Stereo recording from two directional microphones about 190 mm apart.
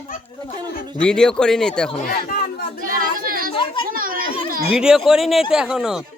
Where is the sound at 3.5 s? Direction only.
25° left (ahead or behind).